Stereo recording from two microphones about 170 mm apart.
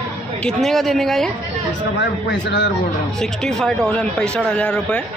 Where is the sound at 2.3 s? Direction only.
90° left.